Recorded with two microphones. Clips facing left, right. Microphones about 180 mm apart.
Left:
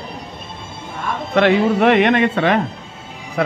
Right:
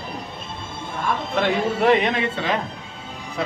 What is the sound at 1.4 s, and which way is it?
Speech, 70° left (ahead or behind).